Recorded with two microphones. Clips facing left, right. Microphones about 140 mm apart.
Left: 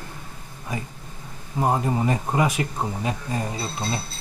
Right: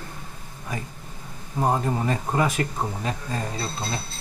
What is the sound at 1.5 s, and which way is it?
Speech, 10° left (ahead or behind).